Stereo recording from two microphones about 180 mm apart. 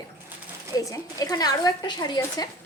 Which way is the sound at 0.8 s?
20° left (ahead or behind).